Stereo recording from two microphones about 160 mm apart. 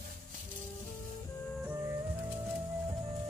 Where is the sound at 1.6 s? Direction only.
15° right (ahead or behind).